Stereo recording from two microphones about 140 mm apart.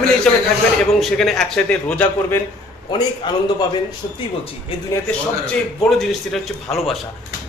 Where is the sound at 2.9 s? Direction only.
30° left (ahead or behind).